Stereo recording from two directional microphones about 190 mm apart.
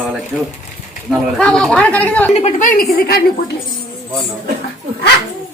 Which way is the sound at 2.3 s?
35° left (ahead or behind).